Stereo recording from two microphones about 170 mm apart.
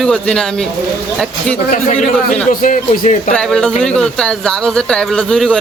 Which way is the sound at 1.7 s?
50° left (ahead or behind).